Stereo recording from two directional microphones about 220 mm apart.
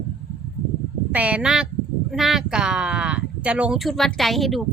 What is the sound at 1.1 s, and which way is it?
A woman's voice, 5° right (ahead or behind).